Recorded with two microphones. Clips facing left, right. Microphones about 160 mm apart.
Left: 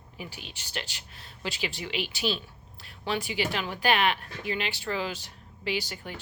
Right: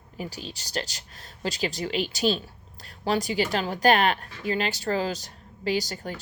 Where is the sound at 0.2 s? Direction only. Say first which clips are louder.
Right 6 dB; 40° right (ahead or behind).